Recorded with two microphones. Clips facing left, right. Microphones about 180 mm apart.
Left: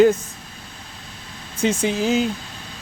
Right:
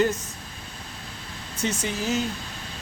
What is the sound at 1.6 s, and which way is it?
Speech, 90° left.